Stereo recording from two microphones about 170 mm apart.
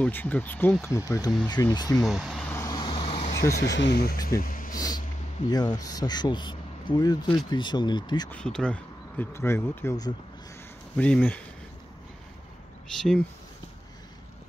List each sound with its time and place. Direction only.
0.0 s speech: 10° left (ahead or behind)
2.0 s speech: centre (ahead or behind)
2.5 s vehicle: 20° left (ahead or behind)
3.5 s speech: 90° left; by 4.7 s 55° left (ahead or behind)
4.7 s speech: 20° left (ahead or behind)
8.3 s speech: 5° left (ahead or behind)
11.0 s speech: 10° left (ahead or behind)